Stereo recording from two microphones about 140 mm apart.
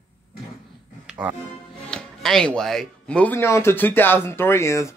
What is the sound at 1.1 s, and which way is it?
Music, 10° right (ahead or behind).